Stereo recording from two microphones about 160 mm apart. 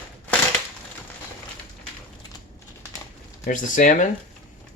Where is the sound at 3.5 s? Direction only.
55° left (ahead or behind).